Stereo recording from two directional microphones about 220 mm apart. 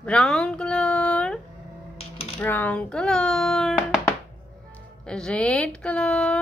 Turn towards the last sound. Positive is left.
turn(degrees=5)  # may be behind; listen again after turning